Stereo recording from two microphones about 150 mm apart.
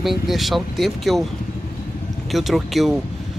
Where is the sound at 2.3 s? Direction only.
Centre (ahead or behind).